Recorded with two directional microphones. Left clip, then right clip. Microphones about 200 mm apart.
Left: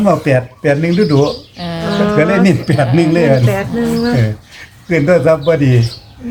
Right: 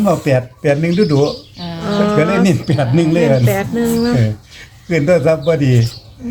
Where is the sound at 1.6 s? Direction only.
40° left (ahead or behind).